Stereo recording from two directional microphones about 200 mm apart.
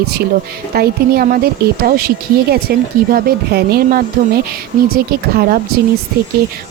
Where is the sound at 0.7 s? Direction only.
50° right (ahead or behind).